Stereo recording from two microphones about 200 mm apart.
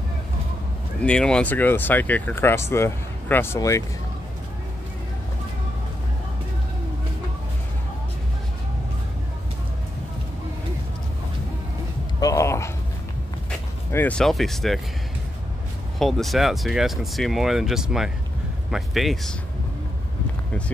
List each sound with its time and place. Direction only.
1.0 s speech: 5° left (ahead or behind)
12.2 s a sound: 15° left (ahead or behind)
13.9 s speech: 5° left (ahead or behind)
16.0 s speech: centre (ahead or behind)